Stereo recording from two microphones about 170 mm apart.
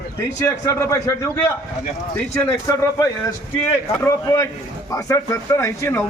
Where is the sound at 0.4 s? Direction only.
15° left (ahead or behind).